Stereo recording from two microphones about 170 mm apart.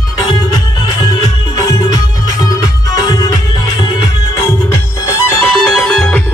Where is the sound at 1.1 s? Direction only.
30° left (ahead or behind).